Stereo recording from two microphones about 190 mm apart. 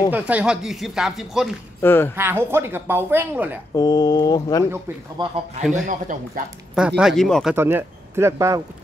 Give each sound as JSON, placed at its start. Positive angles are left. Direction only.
{"t": 0.1, "sound": "speech", "side_deg": -5}
{"t": 1.8, "sound": "speech", "side_deg": 10}
{"t": 2.1, "sound": "a woman's voice", "side_deg": -10}
{"t": 3.7, "sound": "speech", "side_deg": 20}
{"t": 5.2, "sound": "a man's voice", "side_deg": -25}
{"t": 5.6, "sound": "speech", "side_deg": -5}
{"t": 5.9, "sound": "speech", "side_deg": -40}
{"t": 6.7, "sound": "speech", "side_deg": -5}
{"t": 7.5, "sound": "speech", "side_deg": -10}